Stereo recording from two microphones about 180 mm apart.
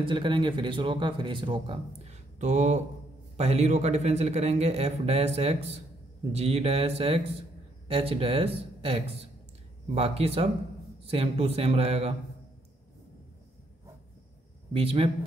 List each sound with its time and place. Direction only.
0.0 s speech: 25° right (ahead or behind)
2.3 s a man's voice: 40° right (ahead or behind)
14.7 s a man's voice: 30° right (ahead or behind)